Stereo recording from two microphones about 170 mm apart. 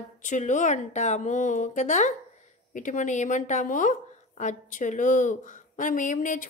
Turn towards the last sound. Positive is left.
turn(degrees=50)  # may be behind; listen again after turning